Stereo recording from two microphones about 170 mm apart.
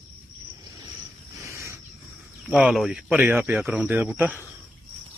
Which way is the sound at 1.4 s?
15° right (ahead or behind).